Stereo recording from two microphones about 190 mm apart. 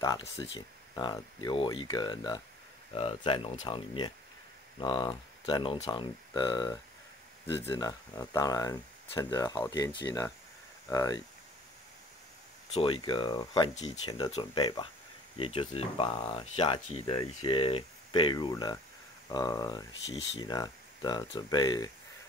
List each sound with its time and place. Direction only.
0.0 s speech: 20° left (ahead or behind)
12.7 s speech: 25° left (ahead or behind)